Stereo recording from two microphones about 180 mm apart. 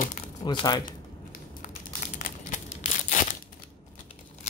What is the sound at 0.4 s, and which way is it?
Speech, 25° left (ahead or behind).